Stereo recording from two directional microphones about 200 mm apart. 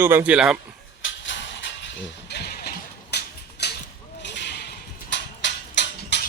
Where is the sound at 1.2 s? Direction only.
65° left (ahead or behind).